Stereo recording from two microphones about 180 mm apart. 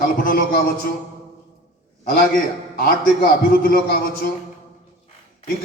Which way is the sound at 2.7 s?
55° left (ahead or behind).